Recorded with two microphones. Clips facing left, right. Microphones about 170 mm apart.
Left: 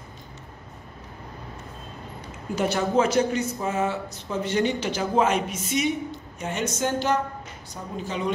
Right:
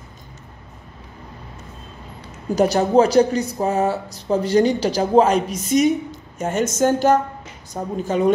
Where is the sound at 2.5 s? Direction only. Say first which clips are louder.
Right 7 dB; 40° right (ahead or behind).